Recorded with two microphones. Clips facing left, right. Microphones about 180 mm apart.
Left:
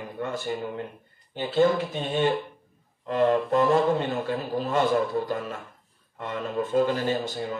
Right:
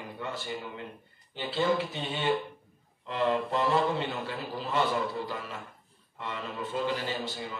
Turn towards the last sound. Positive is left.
turn(degrees=45)  # may be behind; listen again after turning